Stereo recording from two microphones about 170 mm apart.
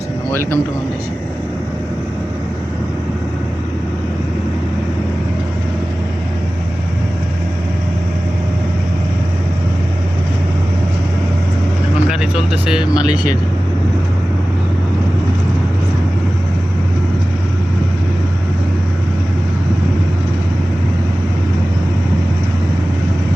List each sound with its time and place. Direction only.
0.3 s speech: 15° left (ahead or behind)
12.0 s vehicle: 5° right (ahead or behind)